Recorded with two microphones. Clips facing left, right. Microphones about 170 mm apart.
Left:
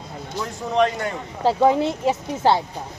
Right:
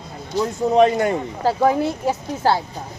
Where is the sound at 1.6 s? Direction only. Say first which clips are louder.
Left 1 dB; 25° left (ahead or behind).